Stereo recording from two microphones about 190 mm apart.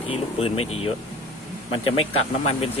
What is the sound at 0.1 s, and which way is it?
Speech, 30° left (ahead or behind).